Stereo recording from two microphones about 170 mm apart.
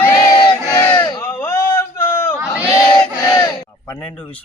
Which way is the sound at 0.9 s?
25° left (ahead or behind).